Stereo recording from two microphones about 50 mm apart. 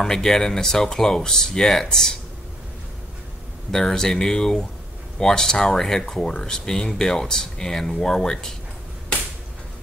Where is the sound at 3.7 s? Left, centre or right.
Centre.